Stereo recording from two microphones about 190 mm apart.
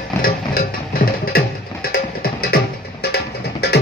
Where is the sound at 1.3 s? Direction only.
50° left (ahead or behind).